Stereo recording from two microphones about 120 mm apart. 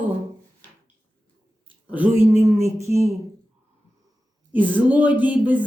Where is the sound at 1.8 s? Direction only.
15° right (ahead or behind).